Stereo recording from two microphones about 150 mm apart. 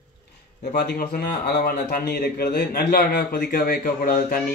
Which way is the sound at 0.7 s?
90° left.